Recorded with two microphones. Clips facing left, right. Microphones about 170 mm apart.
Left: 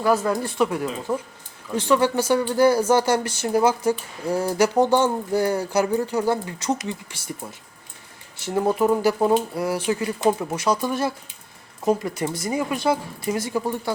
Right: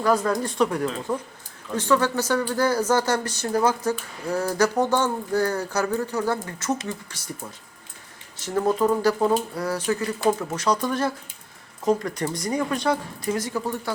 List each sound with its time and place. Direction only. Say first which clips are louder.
0.0 s speech: left 1 dB; 10° left (ahead or behind)
4.7 s speech: left 4 dB; 30° left (ahead or behind)
5.3 s speech: left 2 dB; 10° left (ahead or behind)
8.4 s speech: left 1 dB; 10° left (ahead or behind)